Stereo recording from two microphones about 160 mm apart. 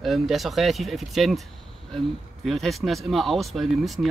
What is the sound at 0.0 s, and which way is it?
Speech, centre (ahead or behind).